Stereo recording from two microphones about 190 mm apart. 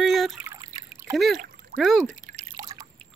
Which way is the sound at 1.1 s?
Centre (ahead or behind).